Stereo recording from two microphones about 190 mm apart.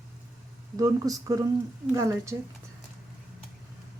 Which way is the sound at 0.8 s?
20° right (ahead or behind).